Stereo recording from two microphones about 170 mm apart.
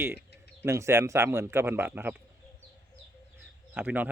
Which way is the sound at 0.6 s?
15° right (ahead or behind).